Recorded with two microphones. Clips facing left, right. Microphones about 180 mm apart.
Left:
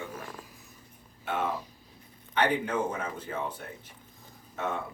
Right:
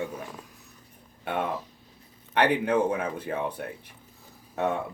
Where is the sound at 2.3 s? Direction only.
65° right (ahead or behind).